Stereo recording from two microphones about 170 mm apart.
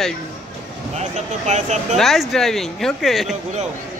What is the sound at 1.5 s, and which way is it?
Speech, 45° right (ahead or behind).